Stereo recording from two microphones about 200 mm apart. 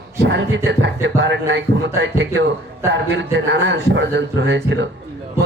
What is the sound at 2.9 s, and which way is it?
A man's voice, 65° right (ahead or behind).